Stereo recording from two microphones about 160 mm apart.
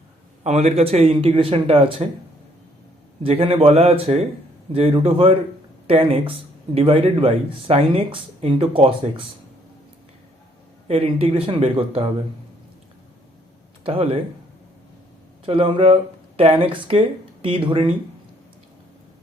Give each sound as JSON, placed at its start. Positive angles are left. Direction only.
{"t": 0.4, "sound": "speech", "side_deg": -40}
{"t": 3.2, "sound": "speech", "side_deg": -35}
{"t": 10.8, "sound": "speech", "side_deg": -35}
{"t": 13.8, "sound": "speech", "side_deg": -35}
{"t": 15.4, "sound": "speech", "side_deg": -35}